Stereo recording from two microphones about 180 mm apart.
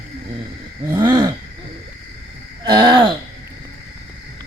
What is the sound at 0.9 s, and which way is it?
Wild animals, 25° right (ahead or behind).